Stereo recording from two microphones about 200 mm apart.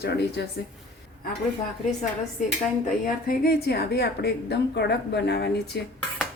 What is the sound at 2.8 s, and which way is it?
Speech, 45° left (ahead or behind).